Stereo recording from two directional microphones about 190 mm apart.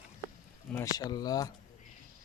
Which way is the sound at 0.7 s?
15° left (ahead or behind).